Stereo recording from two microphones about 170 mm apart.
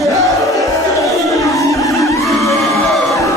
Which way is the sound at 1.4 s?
20° left (ahead or behind).